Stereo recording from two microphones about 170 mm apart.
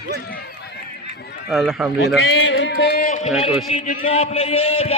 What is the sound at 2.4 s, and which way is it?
Music, 90° left.